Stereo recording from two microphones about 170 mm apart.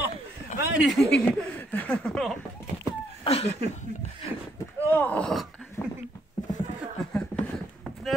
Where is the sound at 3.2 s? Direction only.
35° left (ahead or behind).